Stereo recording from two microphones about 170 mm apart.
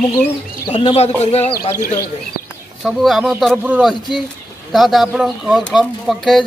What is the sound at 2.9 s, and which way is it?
A man's voice, centre (ahead or behind).